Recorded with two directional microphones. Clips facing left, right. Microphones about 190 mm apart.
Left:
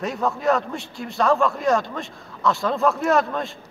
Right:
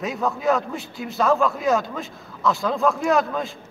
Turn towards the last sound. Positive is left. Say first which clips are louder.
# even
turn(degrees=0)  # may be behind; listen again after turning